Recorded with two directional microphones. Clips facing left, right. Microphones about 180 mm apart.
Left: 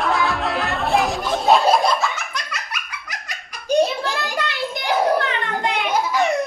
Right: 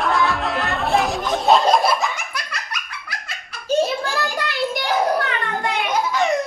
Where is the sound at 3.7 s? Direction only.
20° left (ahead or behind).